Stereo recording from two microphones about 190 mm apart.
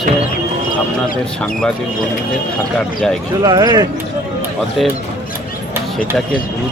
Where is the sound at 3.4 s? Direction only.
20° right (ahead or behind).